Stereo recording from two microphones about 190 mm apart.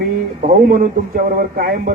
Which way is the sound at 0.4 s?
50° right (ahead or behind).